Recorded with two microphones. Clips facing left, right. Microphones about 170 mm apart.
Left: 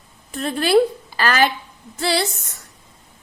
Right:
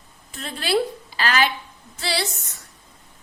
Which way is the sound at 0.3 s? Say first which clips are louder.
Left 6 dB; 55° left (ahead or behind).